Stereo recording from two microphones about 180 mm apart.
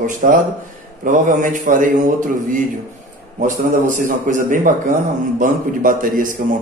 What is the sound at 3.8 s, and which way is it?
A man's voice, 45° right (ahead or behind).